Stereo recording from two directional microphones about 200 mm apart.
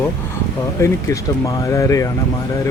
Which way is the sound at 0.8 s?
15° left (ahead or behind).